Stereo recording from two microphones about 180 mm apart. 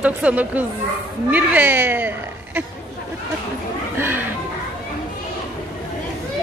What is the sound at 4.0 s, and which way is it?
Music, 10° right (ahead or behind).